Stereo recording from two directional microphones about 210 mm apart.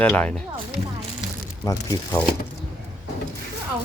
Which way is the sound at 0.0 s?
5° left (ahead or behind).